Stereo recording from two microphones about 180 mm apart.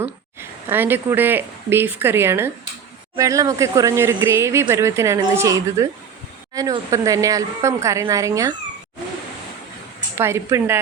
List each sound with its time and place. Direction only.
0.3 s a woman's voice: 10° right (ahead or behind)
10.2 s a woman's voice: 15° right (ahead or behind)